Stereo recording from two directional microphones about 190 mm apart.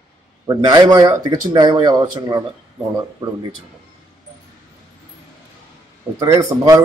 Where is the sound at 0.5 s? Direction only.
20° right (ahead or behind).